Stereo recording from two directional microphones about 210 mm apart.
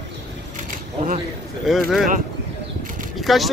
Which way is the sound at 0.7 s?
40° right (ahead or behind).